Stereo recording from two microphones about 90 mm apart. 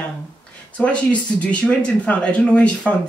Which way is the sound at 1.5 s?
15° left (ahead or behind).